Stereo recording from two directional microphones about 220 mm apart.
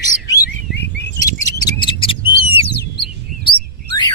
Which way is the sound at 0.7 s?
50° left (ahead or behind).